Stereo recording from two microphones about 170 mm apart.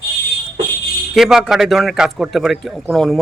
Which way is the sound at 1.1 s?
5° right (ahead or behind).